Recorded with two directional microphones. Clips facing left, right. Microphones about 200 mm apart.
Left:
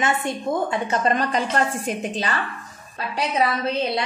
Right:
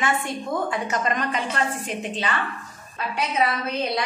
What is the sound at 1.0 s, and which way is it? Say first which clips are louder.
Speech: left 4 dB; 35° left (ahead or behind).